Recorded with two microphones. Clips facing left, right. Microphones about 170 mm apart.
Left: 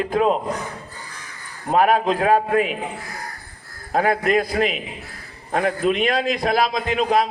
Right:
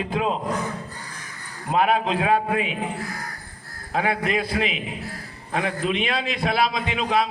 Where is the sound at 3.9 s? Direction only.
45° left (ahead or behind).